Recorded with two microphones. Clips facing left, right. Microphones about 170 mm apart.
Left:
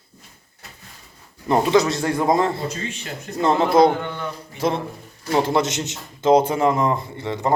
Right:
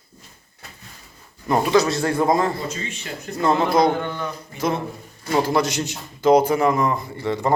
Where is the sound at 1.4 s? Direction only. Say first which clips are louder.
Left 1 dB; 20° left (ahead or behind).